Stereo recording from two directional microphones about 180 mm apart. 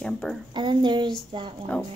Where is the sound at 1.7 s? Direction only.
5° left (ahead or behind).